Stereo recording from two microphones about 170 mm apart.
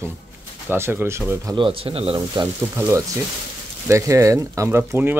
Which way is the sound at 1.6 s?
30° right (ahead or behind).